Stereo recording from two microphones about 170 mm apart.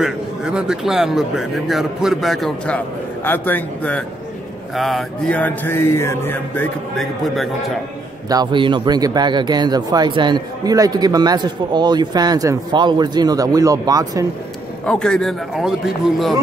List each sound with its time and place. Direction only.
0.0 s speech: 5° right (ahead or behind)
3.3 s mantra: 10° left (ahead or behind)
8.3 s speech: 25° right (ahead or behind)
14.9 s speech: 5° left (ahead or behind)